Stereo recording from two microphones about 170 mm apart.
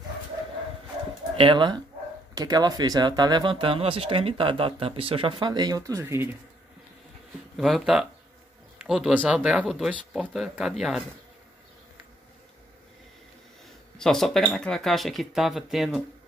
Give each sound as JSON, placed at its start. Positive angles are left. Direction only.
{"t": 1.3, "sound": "speech", "side_deg": -30}
{"t": 7.5, "sound": "speech", "side_deg": 0}
{"t": 13.9, "sound": "speech", "side_deg": 0}